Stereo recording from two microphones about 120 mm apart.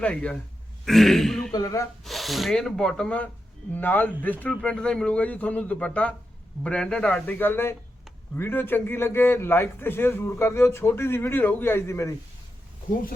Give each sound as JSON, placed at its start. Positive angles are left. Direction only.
{"t": 0.0, "sound": "speech", "side_deg": 10}
{"t": 1.5, "sound": "a man's voice", "side_deg": 30}
{"t": 2.0, "sound": "a man's voice", "side_deg": 0}